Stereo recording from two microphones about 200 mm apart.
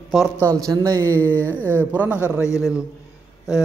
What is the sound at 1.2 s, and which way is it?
Speech, 10° left (ahead or behind).